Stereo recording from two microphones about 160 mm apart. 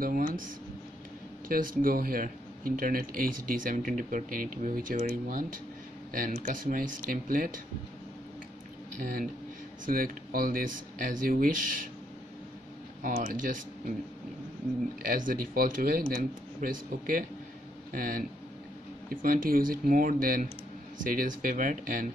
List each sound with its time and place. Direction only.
0.0 s speech: 65° right (ahead or behind)
1.5 s speech: 60° right (ahead or behind)
9.0 s speech: 65° right (ahead or behind)
13.0 s speech: 60° right (ahead or behind)
15.0 s speech: 60° right (ahead or behind)